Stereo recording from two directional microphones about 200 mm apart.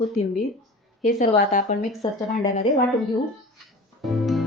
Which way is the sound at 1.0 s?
40° left (ahead or behind).